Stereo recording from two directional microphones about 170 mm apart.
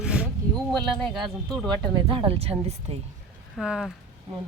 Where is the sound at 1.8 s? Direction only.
30° right (ahead or behind).